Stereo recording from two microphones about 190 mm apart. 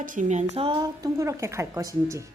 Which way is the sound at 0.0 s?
45° right (ahead or behind).